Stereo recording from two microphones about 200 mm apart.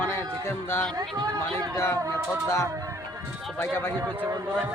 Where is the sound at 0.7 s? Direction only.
10° left (ahead or behind).